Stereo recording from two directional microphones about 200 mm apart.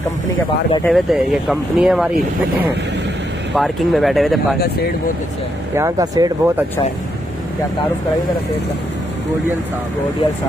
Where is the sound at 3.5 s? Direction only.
Centre (ahead or behind).